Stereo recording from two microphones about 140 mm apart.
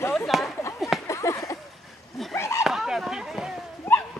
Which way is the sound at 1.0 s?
20° left (ahead or behind).